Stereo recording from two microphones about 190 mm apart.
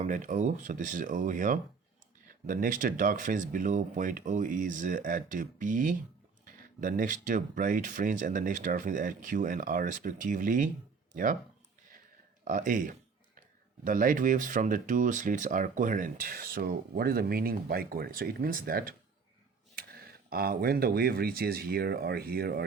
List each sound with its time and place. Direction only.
0.0 s speech: 40° right (ahead or behind)
12.5 s a sound: 45° right (ahead or behind)
13.8 s speech: 45° right (ahead or behind)
20.3 s speech: 55° right (ahead or behind)